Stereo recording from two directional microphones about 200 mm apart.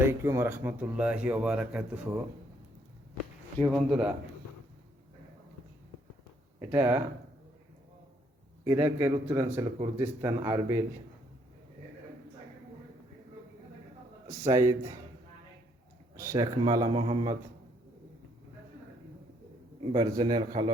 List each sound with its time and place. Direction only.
0.0 s speech: 10° right (ahead or behind)
3.6 s speech: centre (ahead or behind)
6.7 s speech: 10° right (ahead or behind)
8.6 s speech: 15° right (ahead or behind)
14.5 s speech: 15° right (ahead or behind)
16.1 s speech: 15° right (ahead or behind)
19.9 s speech: 25° right (ahead or behind)